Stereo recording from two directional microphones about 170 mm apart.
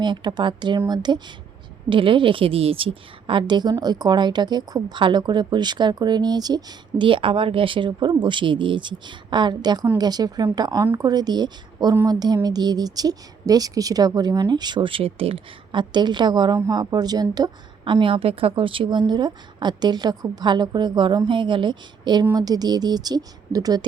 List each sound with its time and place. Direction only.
0.0 s a woman's voice: 25° right (ahead or behind)